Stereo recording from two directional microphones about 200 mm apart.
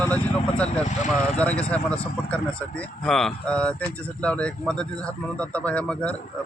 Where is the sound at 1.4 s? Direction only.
5° left (ahead or behind).